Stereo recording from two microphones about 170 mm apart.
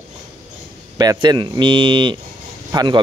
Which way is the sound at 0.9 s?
25° right (ahead or behind).